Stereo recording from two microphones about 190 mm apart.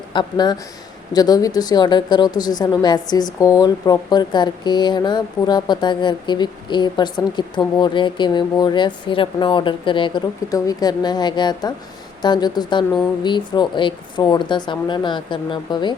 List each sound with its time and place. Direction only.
0.1 s speech: 25° left (ahead or behind)